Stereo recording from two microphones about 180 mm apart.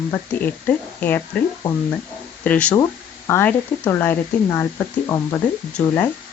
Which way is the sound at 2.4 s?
10° left (ahead or behind).